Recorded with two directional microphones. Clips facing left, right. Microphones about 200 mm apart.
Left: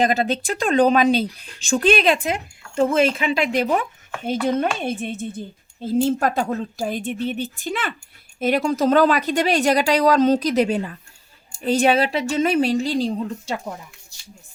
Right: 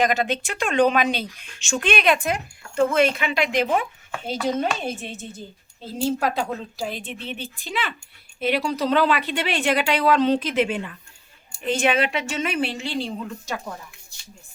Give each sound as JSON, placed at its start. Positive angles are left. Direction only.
{"t": 0.0, "sound": "speech", "side_deg": 35}
{"t": 4.3, "sound": "a woman's voice", "side_deg": 55}